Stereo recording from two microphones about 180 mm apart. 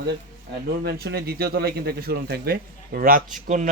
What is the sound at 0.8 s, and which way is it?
Speech, 65° right (ahead or behind).